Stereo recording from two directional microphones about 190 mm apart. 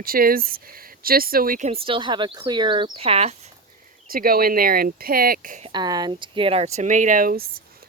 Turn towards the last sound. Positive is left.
turn(degrees=-45)  # may be behind; listen again after turning